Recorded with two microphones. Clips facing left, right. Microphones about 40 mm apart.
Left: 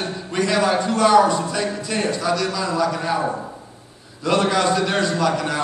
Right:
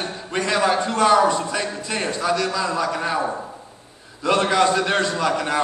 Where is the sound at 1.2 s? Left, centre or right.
Right.